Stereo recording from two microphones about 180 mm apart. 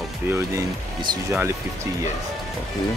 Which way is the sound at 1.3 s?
15° right (ahead or behind).